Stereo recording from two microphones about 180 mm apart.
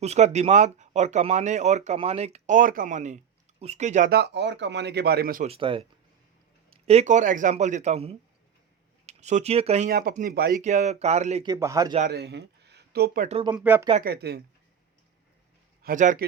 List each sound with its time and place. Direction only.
0.0 s speech: 40° right (ahead or behind)
4.1 s speech: 70° right (ahead or behind); by 5.5 s 55° right (ahead or behind)
5.5 s speech: 30° right (ahead or behind)
9.9 s speech: 55° right (ahead or behind)
10.6 s speech: 40° right (ahead or behind)
11.4 s speech: 20° right (ahead or behind)
12.0 s speech: 65° right (ahead or behind)
13.5 s speech: 10° right (ahead or behind)
14.0 s speech: 60° right (ahead or behind)
15.8 s a man's voice: 45° right (ahead or behind)